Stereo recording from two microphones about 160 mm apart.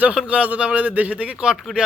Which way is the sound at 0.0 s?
5° right (ahead or behind).